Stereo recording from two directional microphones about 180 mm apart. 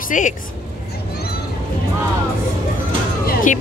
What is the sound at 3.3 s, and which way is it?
Music, 50° left (ahead or behind).